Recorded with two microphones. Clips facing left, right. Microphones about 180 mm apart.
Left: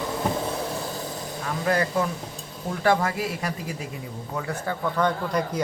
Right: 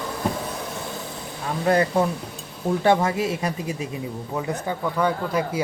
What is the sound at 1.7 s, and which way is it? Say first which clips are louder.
Speech: right 4 dB; 30° right (ahead or behind).